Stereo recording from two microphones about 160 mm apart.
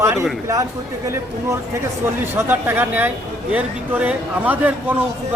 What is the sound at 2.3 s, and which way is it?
Speech, 10° right (ahead or behind).